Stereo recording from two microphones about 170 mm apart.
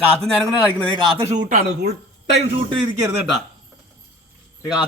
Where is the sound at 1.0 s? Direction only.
25° right (ahead or behind).